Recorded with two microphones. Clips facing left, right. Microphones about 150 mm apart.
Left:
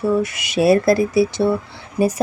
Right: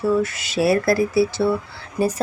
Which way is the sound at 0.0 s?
15° left (ahead or behind).